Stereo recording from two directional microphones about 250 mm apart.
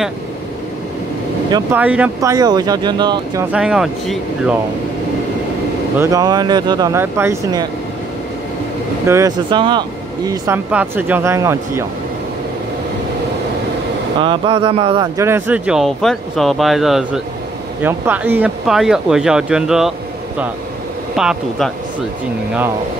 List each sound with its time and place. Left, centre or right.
1.5 s speech: centre
3.5 s speech: centre
5.9 s speech: centre
9.0 s speech: centre
14.2 s speech: centre
21.2 s speech: centre